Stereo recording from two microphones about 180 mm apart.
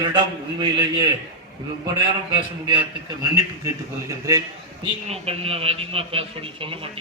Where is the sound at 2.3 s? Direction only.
30° right (ahead or behind).